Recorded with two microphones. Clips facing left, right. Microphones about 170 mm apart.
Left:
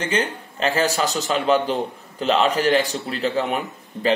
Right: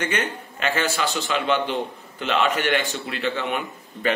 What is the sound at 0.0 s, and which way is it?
A man's voice, 30° left (ahead or behind).